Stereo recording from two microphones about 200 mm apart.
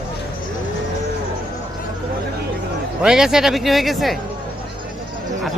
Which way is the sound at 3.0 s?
5° right (ahead or behind).